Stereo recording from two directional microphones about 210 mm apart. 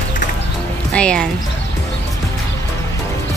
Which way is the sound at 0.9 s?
5° left (ahead or behind).